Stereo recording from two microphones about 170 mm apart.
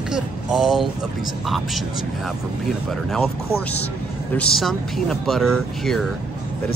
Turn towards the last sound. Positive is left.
turn(degrees=0)  # may be behind; listen again after turning